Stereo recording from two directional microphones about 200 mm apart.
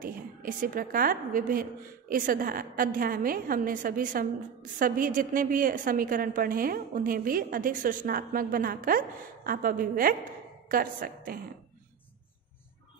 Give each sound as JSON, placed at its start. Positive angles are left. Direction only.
{"t": 0.0, "sound": "a woman's voice", "side_deg": -40}